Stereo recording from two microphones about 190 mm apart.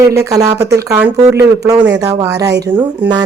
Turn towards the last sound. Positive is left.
turn(degrees=-10)  # may be behind; listen again after turning